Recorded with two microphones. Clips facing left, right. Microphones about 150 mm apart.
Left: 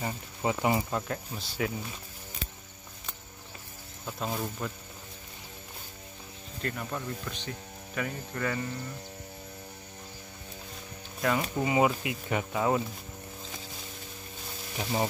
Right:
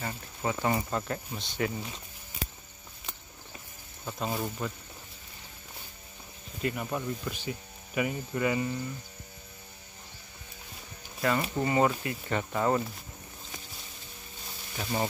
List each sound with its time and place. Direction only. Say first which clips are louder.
0.0 s speech: left 2 dB; 15° left (ahead or behind)
0.8 s speech: even; centre (ahead or behind)
4.0 s speech: right 1 dB; centre (ahead or behind)
6.6 s speech: right 3 dB; 10° right (ahead or behind)
11.1 s speech: even; centre (ahead or behind)
14.8 s speech: left 1 dB; 15° left (ahead or behind)